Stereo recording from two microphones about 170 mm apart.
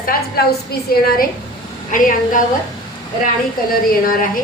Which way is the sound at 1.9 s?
50° left (ahead or behind).